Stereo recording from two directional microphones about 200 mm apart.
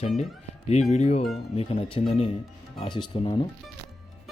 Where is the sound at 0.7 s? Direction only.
35° left (ahead or behind).